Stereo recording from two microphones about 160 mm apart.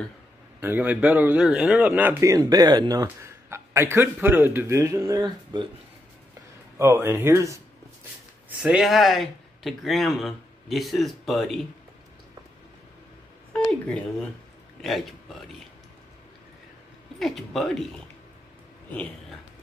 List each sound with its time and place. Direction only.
0.6 s a man's voice: 10° right (ahead or behind); by 5.7 s 25° right (ahead or behind)
6.8 s a man's voice: 15° right (ahead or behind)
8.5 s speech: 5° right (ahead or behind)
13.5 s a sound: 10° left (ahead or behind)
14.8 s speech: centre (ahead or behind)
17.2 s speech: centre (ahead or behind)